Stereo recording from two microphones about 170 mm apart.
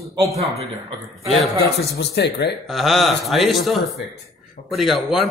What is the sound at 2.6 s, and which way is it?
Speech, centre (ahead or behind).